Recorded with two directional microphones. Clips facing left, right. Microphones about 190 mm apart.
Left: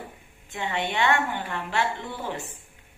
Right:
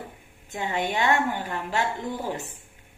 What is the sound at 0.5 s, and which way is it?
A woman's voice, 45° right (ahead or behind).